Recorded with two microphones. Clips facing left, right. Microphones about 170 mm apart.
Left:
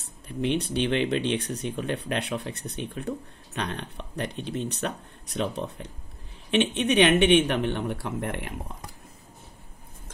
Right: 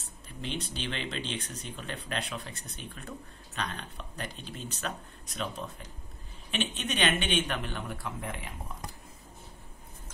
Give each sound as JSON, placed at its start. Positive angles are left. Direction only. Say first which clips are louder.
{"t": 0.0, "sound": "speech", "louder": "left 12 dB", "side_deg": 65}